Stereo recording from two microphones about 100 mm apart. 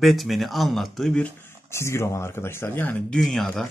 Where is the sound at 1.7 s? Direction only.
25° left (ahead or behind).